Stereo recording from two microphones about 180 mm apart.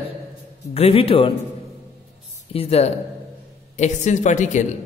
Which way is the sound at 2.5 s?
35° left (ahead or behind).